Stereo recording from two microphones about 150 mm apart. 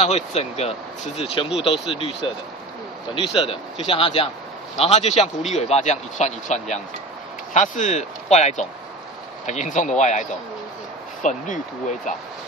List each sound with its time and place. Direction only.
0.0 s speech: 45° left (ahead or behind)
11.2 s speech: 55° left (ahead or behind)